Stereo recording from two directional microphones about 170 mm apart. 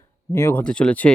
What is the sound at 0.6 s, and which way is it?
Speech, 5° left (ahead or behind).